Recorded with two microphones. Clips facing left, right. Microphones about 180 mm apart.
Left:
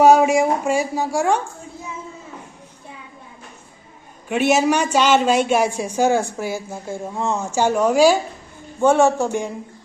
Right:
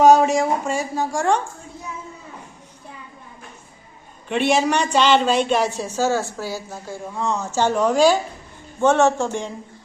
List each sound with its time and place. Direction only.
0.0 s speech: 10° left (ahead or behind)
4.3 s speech: 5° left (ahead or behind); by 7.3 s 25° left (ahead or behind)
7.4 s speech: 10° left (ahead or behind)